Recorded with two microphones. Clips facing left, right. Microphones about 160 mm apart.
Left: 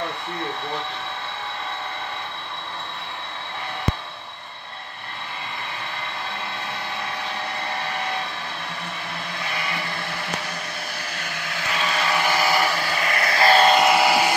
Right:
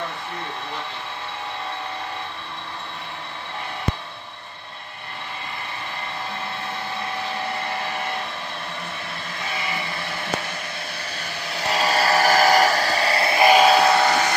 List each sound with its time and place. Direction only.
11.6 s vehicle: 40° right (ahead or behind); by 13.7 s 10° right (ahead or behind)
13.7 s sheep: 5° left (ahead or behind)